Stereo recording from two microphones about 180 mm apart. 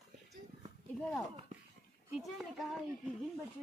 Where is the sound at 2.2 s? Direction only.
Centre (ahead or behind).